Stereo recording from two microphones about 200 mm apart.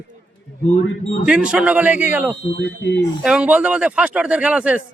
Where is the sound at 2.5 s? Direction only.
60° left (ahead or behind).